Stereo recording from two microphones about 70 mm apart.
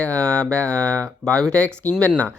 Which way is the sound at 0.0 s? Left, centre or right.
Centre.